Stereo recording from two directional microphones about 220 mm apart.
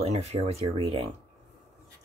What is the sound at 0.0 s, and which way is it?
Speech, 30° right (ahead or behind).